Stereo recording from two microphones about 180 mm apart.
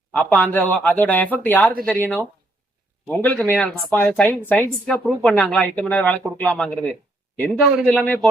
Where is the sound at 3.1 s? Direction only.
5° left (ahead or behind).